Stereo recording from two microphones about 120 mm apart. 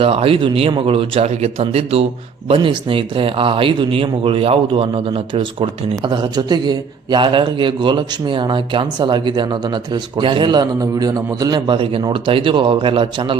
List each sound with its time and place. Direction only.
0.0 s a man's voice: 50° right (ahead or behind)